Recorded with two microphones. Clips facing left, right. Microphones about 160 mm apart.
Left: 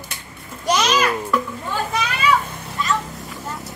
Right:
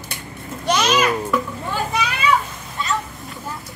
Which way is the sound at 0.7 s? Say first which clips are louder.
Even; centre (ahead or behind).